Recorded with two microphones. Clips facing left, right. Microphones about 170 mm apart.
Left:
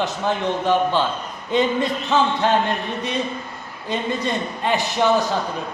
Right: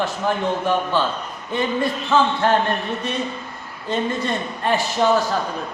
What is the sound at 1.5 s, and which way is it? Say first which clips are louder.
Speech: left 2 dB; 20° left (ahead or behind).